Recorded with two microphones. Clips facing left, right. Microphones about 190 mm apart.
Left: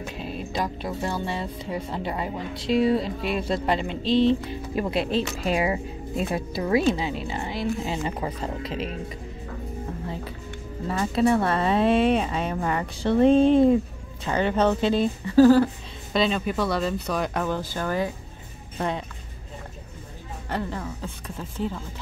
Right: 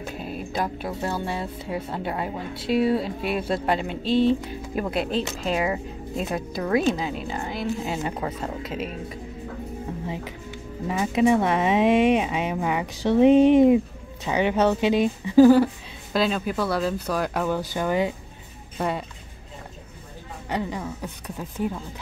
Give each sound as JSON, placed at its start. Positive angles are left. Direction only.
{"t": 0.2, "sound": "speech", "side_deg": -5}
{"t": 10.0, "sound": "speech", "side_deg": -15}
{"t": 16.1, "sound": "speech", "side_deg": 0}
{"t": 18.8, "sound": "speech", "side_deg": -5}
{"t": 20.4, "sound": "speech", "side_deg": -15}